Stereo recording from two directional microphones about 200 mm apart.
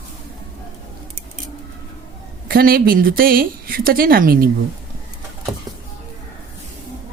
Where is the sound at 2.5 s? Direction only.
50° right (ahead or behind).